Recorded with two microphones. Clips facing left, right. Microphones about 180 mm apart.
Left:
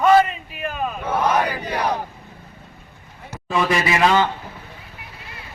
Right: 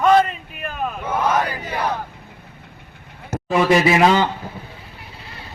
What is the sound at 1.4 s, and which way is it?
Battle cry, 10° left (ahead or behind).